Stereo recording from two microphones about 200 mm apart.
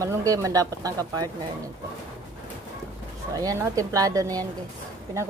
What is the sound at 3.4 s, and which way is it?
A woman's voice, 15° right (ahead or behind).